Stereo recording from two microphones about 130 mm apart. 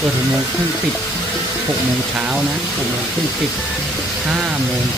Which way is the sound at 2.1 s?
5° right (ahead or behind).